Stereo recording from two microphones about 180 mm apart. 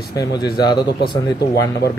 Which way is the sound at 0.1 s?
20° left (ahead or behind).